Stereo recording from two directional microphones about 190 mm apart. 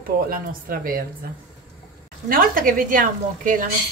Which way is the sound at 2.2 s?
50° right (ahead or behind).